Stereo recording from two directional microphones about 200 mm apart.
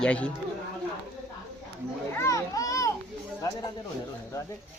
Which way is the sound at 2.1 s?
15° left (ahead or behind).